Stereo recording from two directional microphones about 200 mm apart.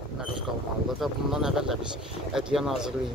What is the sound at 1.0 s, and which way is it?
Speech, centre (ahead or behind).